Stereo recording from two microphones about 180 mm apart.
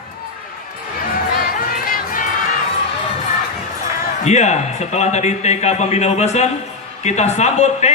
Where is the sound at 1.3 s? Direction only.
50° left (ahead or behind).